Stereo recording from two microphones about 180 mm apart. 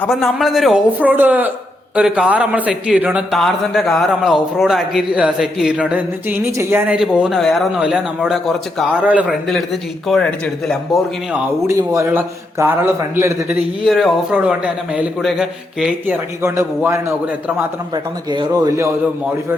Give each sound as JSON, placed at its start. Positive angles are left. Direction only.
{"t": 0.0, "sound": "a man's voice", "side_deg": 0}
{"t": 10.1, "sound": "a man's voice", "side_deg": 5}
{"t": 11.4, "sound": "a man's voice", "side_deg": -15}
{"t": 13.8, "sound": "a man's voice", "side_deg": 0}